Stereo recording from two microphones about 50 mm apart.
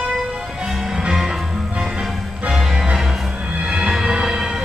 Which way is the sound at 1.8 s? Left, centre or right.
Centre.